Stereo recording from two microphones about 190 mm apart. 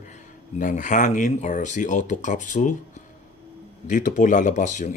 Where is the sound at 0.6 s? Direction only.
40° left (ahead or behind).